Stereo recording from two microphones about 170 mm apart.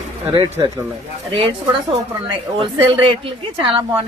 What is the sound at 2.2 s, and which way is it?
Speech, 30° right (ahead or behind).